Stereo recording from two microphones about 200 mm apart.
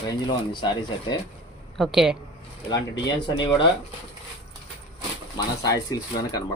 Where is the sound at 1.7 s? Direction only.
Centre (ahead or behind).